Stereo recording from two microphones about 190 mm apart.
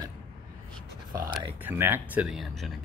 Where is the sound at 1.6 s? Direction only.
10° right (ahead or behind).